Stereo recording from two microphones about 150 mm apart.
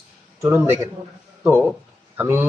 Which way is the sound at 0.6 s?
15° right (ahead or behind).